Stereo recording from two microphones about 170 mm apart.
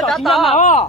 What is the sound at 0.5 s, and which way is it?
Speech, 45° left (ahead or behind).